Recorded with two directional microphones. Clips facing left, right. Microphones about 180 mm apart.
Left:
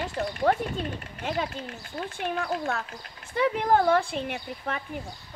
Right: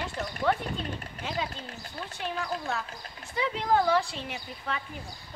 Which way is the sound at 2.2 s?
55° left (ahead or behind).